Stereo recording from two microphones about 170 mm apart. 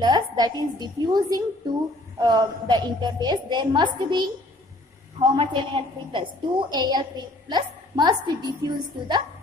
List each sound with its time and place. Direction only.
0.0 s a woman's voice: 25° right (ahead or behind)
5.3 s a woman's voice: 30° right (ahead or behind)